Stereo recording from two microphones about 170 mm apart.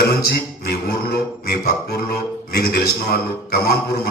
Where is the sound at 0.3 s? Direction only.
65° left (ahead or behind).